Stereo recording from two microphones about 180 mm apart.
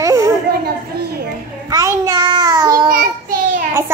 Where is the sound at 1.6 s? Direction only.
20° right (ahead or behind).